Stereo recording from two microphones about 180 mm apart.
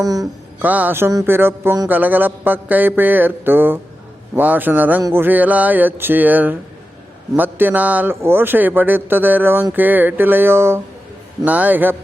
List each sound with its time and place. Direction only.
0.0 s speech: 20° right (ahead or behind)
0.6 s a man's voice: 10° right (ahead or behind)